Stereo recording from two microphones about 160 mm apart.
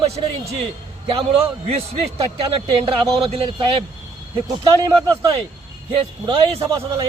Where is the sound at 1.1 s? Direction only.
35° right (ahead or behind).